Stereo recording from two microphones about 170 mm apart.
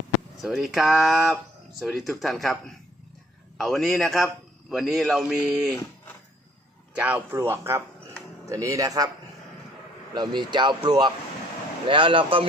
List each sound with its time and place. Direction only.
0.4 s a man's voice: centre (ahead or behind)
6.9 s speech: 10° right (ahead or behind)
10.2 s speech: 25° right (ahead or behind)